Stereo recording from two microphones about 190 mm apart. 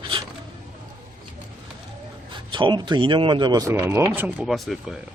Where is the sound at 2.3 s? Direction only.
25° right (ahead or behind); by 5.0 s centre (ahead or behind).